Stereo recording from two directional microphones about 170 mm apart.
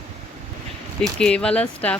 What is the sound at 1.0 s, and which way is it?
Speech, 5° left (ahead or behind).